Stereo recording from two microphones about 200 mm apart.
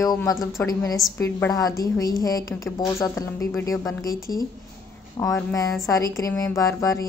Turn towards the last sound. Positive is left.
turn(degrees=15)  # may be behind; listen again after turning